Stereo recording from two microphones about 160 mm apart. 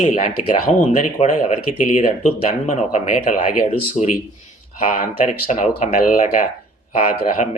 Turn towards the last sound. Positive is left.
turn(degrees=55)  # may be behind; listen again after turning